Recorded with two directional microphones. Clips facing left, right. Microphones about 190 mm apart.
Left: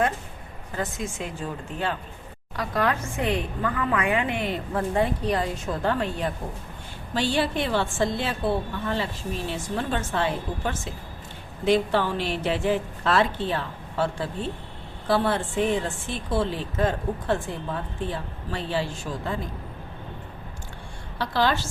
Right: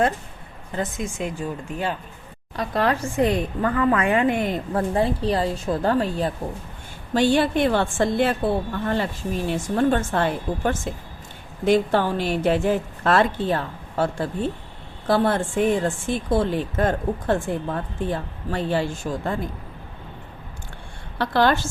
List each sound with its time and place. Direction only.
0.8 s speech: 20° right (ahead or behind)
2.6 s a woman's voice: 30° right (ahead or behind)
7.1 s a woman's voice: 50° right (ahead or behind)
21.2 s a woman's voice: 55° right (ahead or behind)